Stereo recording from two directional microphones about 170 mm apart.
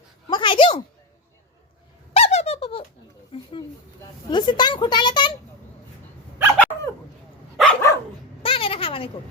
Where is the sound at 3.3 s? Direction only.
30° left (ahead or behind).